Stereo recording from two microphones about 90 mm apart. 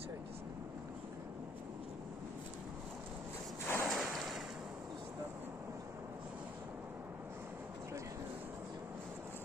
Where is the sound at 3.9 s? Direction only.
Centre (ahead or behind).